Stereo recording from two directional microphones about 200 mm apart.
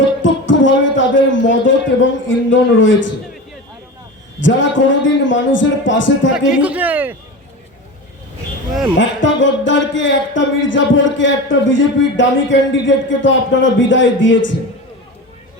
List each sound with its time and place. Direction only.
0.2 s speech: 70° left (ahead or behind)
4.4 s speech: 70° left (ahead or behind)
6.5 s speech: 5° right (ahead or behind)
9.0 s speech: 70° left (ahead or behind)